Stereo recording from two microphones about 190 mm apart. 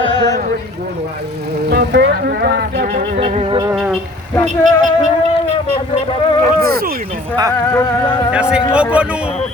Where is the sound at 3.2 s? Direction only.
35° right (ahead or behind).